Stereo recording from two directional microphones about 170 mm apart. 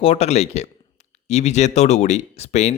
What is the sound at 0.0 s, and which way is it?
A man's voice, 35° left (ahead or behind).